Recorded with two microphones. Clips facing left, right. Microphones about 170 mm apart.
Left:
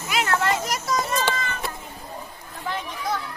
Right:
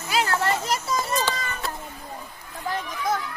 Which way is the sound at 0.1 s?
30° right (ahead or behind).